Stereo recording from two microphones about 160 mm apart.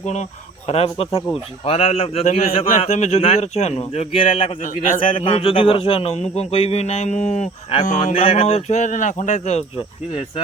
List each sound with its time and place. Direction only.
0.0 s a man's voice: 45° left (ahead or behind)
4.6 s speech: 50° left (ahead or behind)
5.0 s a man's voice: 35° left (ahead or behind)